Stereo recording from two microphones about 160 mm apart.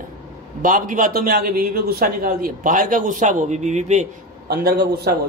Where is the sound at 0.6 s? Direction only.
55° right (ahead or behind).